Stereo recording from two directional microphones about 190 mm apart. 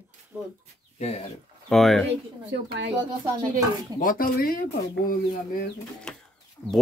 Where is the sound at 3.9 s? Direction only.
50° left (ahead or behind).